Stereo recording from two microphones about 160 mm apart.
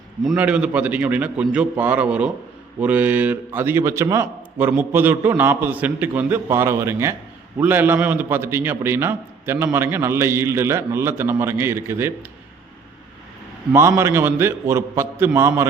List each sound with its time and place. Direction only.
0.3 s a man's voice: 5° right (ahead or behind)
13.7 s a man's voice: 15° right (ahead or behind)